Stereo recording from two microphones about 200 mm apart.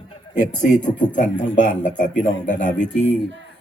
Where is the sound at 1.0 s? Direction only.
40° left (ahead or behind).